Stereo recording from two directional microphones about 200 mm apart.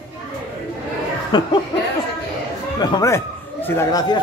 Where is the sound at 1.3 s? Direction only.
20° left (ahead or behind).